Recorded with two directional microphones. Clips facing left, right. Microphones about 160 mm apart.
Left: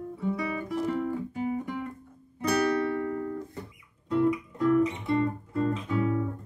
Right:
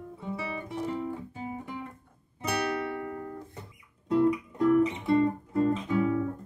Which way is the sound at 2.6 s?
25° right (ahead or behind).